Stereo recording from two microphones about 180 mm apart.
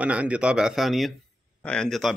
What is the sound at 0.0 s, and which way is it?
Speech, 5° right (ahead or behind).